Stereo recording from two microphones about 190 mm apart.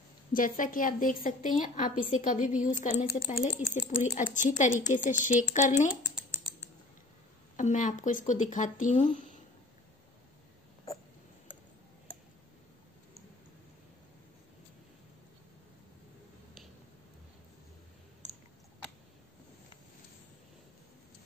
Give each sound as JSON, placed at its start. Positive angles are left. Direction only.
{"t": 0.3, "sound": "a woman's voice", "side_deg": 45}
{"t": 7.5, "sound": "speech", "side_deg": 40}